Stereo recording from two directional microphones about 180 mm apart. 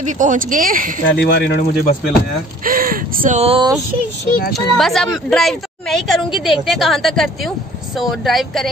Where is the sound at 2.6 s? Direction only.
50° right (ahead or behind).